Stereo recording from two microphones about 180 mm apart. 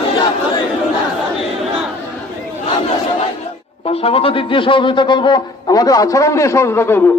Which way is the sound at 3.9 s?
35° left (ahead or behind).